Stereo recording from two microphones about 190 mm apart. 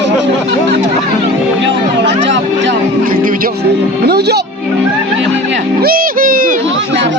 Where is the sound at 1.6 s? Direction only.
70° right (ahead or behind).